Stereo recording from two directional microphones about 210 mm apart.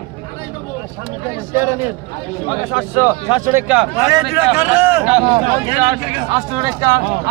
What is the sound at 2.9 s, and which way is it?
Speech, 10° right (ahead or behind).